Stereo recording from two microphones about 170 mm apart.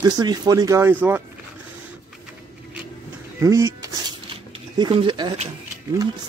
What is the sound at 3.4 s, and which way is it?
Speech, 20° right (ahead or behind).